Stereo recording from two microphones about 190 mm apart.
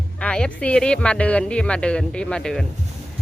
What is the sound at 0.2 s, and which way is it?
Speech, 5° left (ahead or behind).